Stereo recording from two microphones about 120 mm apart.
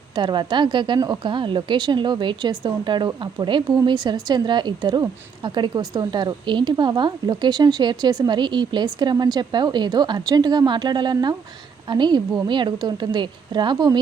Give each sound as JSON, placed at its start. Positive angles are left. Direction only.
{"t": 0.2, "sound": "a woman's voice", "side_deg": -40}